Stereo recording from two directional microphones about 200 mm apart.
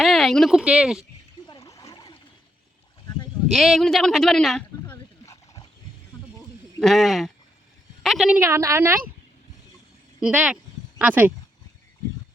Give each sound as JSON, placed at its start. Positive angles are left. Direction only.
{"t": 0.0, "sound": "speech", "side_deg": 0}
{"t": 1.5, "sound": "a sound", "side_deg": 20}
{"t": 3.5, "sound": "speech", "side_deg": 0}
{"t": 5.2, "sound": "dog", "side_deg": 15}
{"t": 6.7, "sound": "speech", "side_deg": 0}
{"t": 8.4, "sound": "a woman's voice", "side_deg": -15}
{"t": 10.2, "sound": "speech", "side_deg": -5}